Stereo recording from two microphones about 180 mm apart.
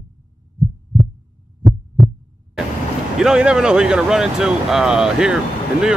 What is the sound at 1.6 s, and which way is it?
Heart sounds, 20° right (ahead or behind).